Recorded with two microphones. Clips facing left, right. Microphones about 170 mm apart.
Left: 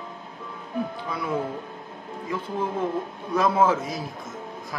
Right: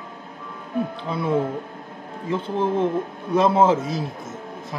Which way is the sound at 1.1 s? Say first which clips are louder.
Right 8 dB; 25° right (ahead or behind).